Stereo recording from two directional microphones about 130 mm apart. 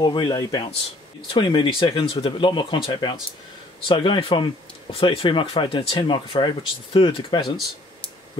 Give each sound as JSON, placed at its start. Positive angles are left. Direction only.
{"t": 0.0, "sound": "speech", "side_deg": 35}